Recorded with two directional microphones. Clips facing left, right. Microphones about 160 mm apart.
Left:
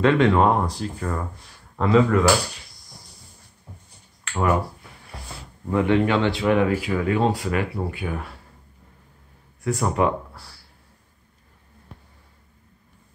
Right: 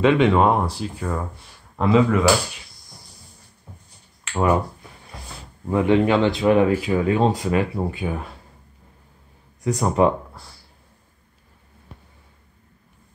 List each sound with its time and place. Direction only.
0.0 s speech: 15° right (ahead or behind)
4.2 s a sound: 20° right (ahead or behind)
5.7 s speech: 20° right (ahead or behind)
9.6 s speech: 20° right (ahead or behind)